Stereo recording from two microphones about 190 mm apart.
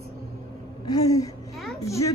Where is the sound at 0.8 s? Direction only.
20° left (ahead or behind).